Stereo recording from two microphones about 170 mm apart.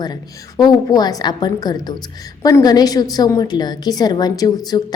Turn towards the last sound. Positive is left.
turn(degrees=25)  # may be behind; listen again after turning